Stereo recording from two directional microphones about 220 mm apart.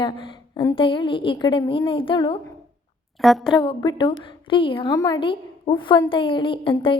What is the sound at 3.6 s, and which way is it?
A woman's voice, 20° left (ahead or behind).